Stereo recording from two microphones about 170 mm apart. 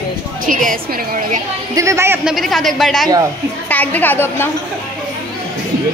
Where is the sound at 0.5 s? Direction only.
50° right (ahead or behind).